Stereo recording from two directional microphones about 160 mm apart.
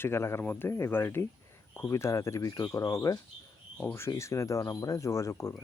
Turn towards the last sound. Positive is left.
turn(degrees=20)  # may be behind; listen again after turning